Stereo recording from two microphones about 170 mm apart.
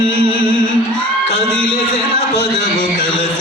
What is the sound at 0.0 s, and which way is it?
Music, 35° right (ahead or behind).